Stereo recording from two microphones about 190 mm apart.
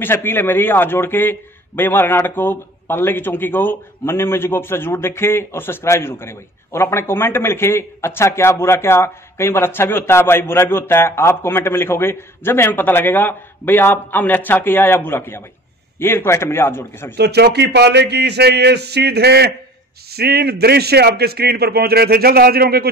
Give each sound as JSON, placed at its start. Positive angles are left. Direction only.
{"t": 0.0, "sound": "a man's voice", "side_deg": 10}
{"t": 17.2, "sound": "a man's voice", "side_deg": -60}